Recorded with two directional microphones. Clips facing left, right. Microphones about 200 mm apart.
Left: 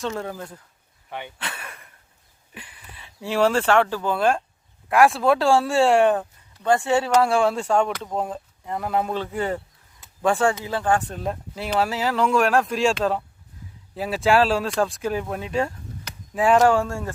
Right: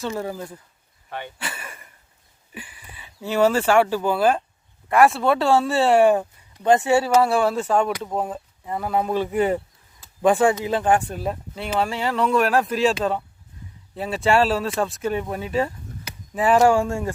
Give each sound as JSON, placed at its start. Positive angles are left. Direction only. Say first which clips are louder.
{"t": 0.0, "sound": "speech", "louder": "right 1 dB", "side_deg": -5}
{"t": 1.4, "sound": "a sound", "louder": "right 1 dB", "side_deg": -5}
{"t": 2.6, "sound": "speech", "louder": "right 3 dB", "side_deg": -5}
{"t": 6.6, "sound": "speech", "louder": "right 3 dB", "side_deg": -20}
{"t": 6.9, "sound": "speech", "louder": "right 1 dB", "side_deg": -5}
{"t": 9.1, "sound": "speech", "louder": "right 5 dB", "side_deg": -15}